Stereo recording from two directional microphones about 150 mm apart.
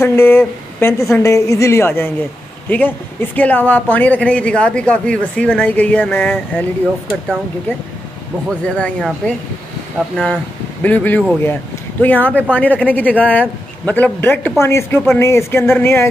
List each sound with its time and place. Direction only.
0.0 s speech: 15° left (ahead or behind)
8.5 s speech: 5° left (ahead or behind)